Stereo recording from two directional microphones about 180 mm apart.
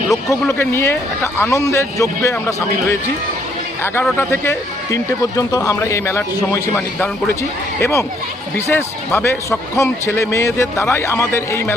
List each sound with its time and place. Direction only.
0.3 s speech: 15° left (ahead or behind)
4.0 s speech: 10° left (ahead or behind)